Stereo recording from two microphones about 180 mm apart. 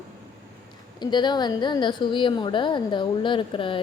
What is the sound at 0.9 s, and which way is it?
A woman's voice, 25° left (ahead or behind).